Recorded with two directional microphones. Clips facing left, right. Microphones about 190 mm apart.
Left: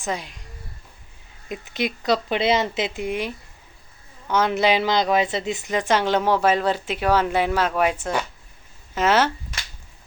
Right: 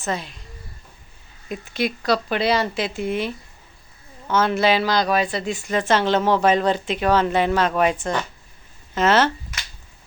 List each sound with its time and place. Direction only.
0.0 s a woman's voice: 15° left (ahead or behind)
1.5 s a woman's voice: 20° left (ahead or behind)